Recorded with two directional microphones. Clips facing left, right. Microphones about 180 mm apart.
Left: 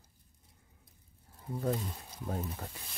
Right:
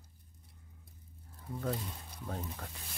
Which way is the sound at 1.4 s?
15° left (ahead or behind).